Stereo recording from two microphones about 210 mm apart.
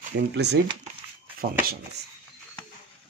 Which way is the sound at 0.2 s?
50° right (ahead or behind).